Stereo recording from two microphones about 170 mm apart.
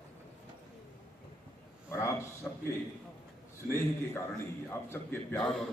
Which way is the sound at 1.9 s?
15° left (ahead or behind).